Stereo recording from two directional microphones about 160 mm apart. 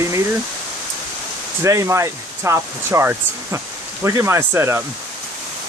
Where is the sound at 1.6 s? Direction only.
20° right (ahead or behind).